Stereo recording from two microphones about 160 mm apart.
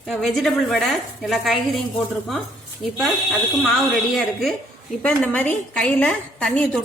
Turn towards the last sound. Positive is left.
turn(degrees=5)  # may be behind; listen again after turning